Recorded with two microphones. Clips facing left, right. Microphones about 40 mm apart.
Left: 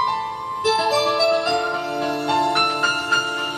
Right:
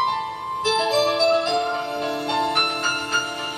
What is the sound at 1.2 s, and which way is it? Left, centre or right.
Music, centre.